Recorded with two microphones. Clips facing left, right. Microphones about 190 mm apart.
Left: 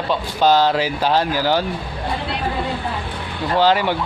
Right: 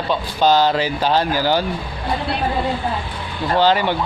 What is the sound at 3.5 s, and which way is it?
Speech, 5° left (ahead or behind).